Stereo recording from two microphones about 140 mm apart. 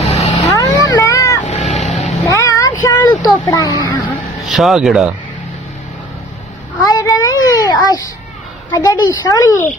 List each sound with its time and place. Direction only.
0.0 s vehicle: 45° left (ahead or behind)
0.4 s a sound: 25° left (ahead or behind)
1.4 s vehicle: 55° left (ahead or behind)
1.8 s vehicle: centre (ahead or behind)
2.2 s vehicle: 20° left (ahead or behind)
2.8 s a sound: 20° left (ahead or behind)
3.2 s a child's voice: 25° left (ahead or behind)
4.5 s speech: centre (ahead or behind)
6.8 s a sound: 25° left (ahead or behind)
8.7 s a woman's voice: 30° left (ahead or behind)